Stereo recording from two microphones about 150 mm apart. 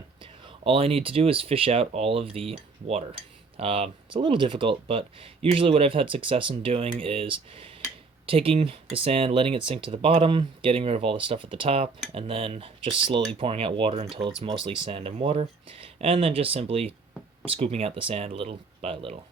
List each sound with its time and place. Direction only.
0.2 s speech: 35° right (ahead or behind)